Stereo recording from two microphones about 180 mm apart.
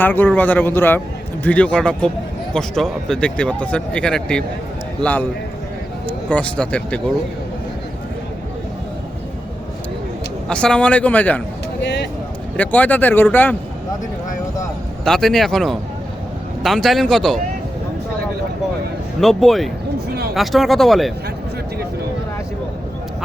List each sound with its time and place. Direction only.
0.0 s a man's voice: 10° left (ahead or behind)
10.5 s speech: 5° left (ahead or behind)
11.8 s speech: 75° left (ahead or behind)
12.5 s speech: 10° left (ahead or behind)
15.0 s speech: centre (ahead or behind)
19.2 s speech: centre (ahead or behind)